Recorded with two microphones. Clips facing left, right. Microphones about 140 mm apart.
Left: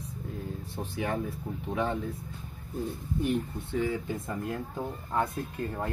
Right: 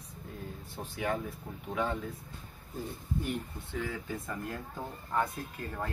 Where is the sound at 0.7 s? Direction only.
25° left (ahead or behind).